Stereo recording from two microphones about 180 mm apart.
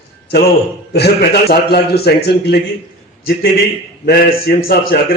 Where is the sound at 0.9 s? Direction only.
65° left (ahead or behind).